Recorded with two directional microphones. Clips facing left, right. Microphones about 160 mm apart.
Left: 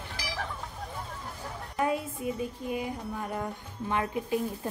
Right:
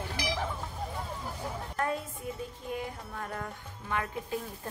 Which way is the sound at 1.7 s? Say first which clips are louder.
Left 5 dB; 15° left (ahead or behind).